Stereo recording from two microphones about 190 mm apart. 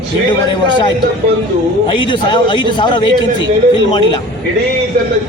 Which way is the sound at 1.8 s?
25° left (ahead or behind).